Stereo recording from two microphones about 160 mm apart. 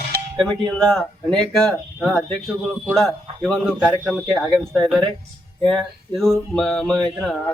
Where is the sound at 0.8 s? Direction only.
5° left (ahead or behind).